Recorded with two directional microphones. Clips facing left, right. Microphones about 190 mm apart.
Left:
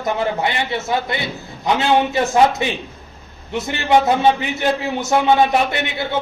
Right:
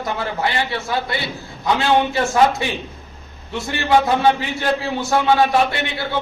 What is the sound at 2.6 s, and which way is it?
A man's voice, 20° left (ahead or behind).